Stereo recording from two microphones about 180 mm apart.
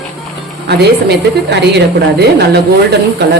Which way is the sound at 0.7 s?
65° right (ahead or behind).